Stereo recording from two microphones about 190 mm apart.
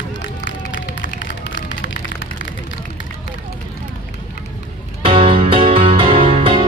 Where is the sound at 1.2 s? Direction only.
75° left (ahead or behind).